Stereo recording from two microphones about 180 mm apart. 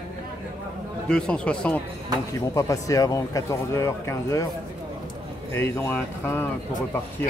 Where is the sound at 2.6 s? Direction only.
20° left (ahead or behind).